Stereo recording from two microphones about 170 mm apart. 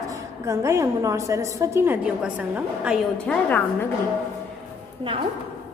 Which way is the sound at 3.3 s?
10° left (ahead or behind).